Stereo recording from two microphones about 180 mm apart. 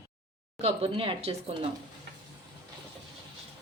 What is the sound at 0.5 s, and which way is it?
Speech, 35° right (ahead or behind).